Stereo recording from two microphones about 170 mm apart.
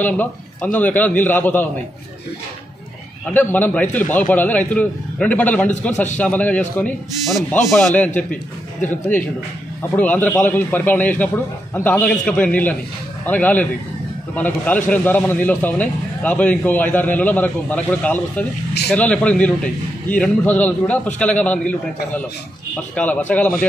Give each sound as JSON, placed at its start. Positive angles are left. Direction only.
{"t": 0.0, "sound": "a man's voice", "side_deg": 10}
{"t": 3.3, "sound": "a man's voice", "side_deg": 10}
{"t": 5.7, "sound": "a man's voice", "side_deg": 45}
{"t": 6.1, "sound": "a man's voice", "side_deg": 10}
{"t": 9.9, "sound": "a man's voice", "side_deg": 10}